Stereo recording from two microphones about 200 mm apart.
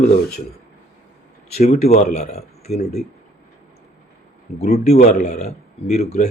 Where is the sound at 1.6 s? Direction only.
35° left (ahead or behind).